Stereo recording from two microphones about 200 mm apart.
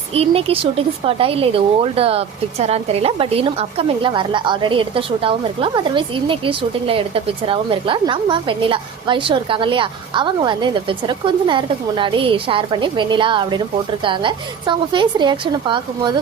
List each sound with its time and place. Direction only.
0.1 s a woman's voice: 30° right (ahead or behind)